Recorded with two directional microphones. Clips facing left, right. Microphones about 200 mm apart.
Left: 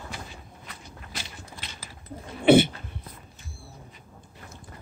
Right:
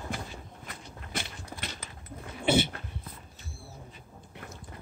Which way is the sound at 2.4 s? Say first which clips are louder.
Left 9 dB; 60° left (ahead or behind).